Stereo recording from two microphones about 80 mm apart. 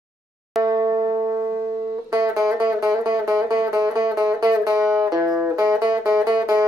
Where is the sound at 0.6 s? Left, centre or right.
Right.